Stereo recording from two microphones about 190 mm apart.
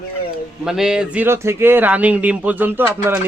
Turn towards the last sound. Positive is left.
turn(degrees=-10)  # may be behind; listen again after turning